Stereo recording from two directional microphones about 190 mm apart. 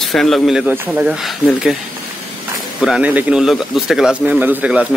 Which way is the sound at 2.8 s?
5° right (ahead or behind).